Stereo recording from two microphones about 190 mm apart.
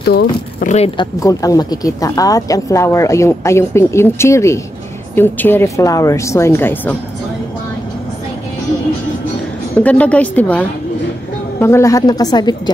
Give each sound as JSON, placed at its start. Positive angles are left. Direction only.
{"t": 0.6, "sound": "speech", "side_deg": 40}
{"t": 1.2, "sound": "speech", "side_deg": 20}
{"t": 9.8, "sound": "a woman's voice", "side_deg": 5}